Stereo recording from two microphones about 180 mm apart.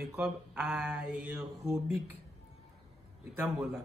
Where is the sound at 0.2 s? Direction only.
5° right (ahead or behind).